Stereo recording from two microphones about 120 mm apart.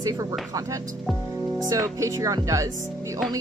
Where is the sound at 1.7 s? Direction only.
25° right (ahead or behind).